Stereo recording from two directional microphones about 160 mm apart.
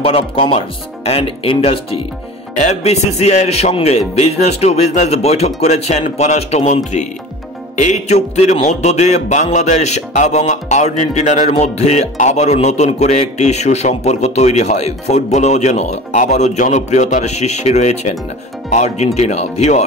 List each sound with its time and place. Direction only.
0.0 s speech: 35° left (ahead or behind)
2.5 s music: 45° left (ahead or behind)